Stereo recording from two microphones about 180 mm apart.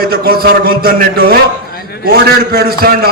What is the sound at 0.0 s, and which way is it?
A man's voice, 55° right (ahead or behind).